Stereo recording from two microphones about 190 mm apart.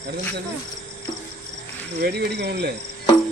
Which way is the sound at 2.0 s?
60° right (ahead or behind).